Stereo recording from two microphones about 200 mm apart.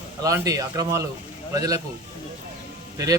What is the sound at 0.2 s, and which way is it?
Speech, 15° right (ahead or behind).